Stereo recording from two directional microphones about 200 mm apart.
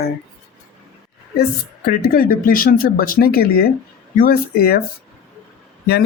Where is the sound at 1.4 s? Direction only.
50° left (ahead or behind).